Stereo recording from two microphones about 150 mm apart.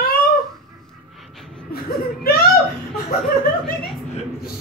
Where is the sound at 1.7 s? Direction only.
90° left.